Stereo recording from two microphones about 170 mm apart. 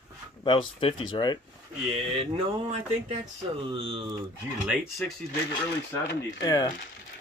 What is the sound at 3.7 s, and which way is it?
Speech, 30° right (ahead or behind).